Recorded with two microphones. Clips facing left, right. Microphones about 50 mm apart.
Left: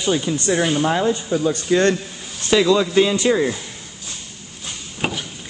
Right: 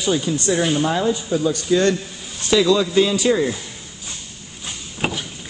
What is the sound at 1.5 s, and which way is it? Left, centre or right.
Speech, left.